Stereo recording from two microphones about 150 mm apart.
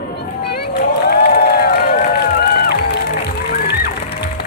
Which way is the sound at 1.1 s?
90° left.